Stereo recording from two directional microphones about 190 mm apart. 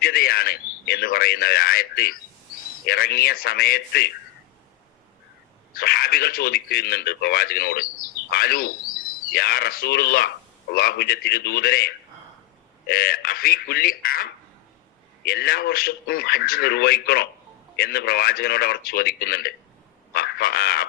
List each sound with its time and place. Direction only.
0.0 s a man's voice: 50° left (ahead or behind)
5.7 s a man's voice: 55° left (ahead or behind)